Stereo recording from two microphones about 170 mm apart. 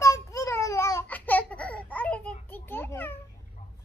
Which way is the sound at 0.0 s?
20° left (ahead or behind).